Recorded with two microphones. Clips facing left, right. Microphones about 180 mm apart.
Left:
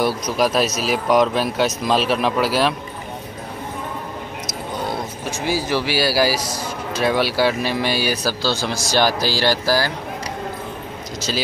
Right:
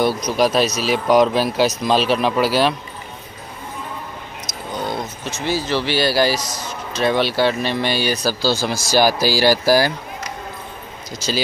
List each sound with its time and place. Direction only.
0.0 s speech: centre (ahead or behind)
5.2 s speech: 10° left (ahead or behind); by 9.9 s 15° right (ahead or behind)